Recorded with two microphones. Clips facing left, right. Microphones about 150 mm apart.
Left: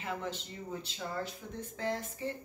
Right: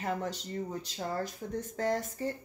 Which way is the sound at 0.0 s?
40° right (ahead or behind).